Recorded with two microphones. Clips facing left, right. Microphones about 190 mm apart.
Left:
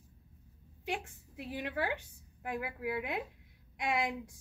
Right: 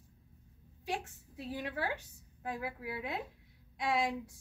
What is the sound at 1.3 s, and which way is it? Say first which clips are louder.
A woman's voice: left 1 dB; 15° left (ahead or behind).